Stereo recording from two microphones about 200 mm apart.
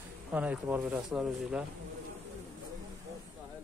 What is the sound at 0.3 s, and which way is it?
Speech, 5° right (ahead or behind).